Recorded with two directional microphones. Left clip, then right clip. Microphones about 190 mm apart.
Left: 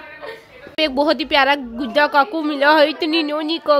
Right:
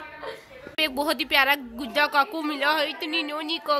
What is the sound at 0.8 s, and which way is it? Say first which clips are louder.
A woman's voice: left 8 dB; 20° left (ahead or behind).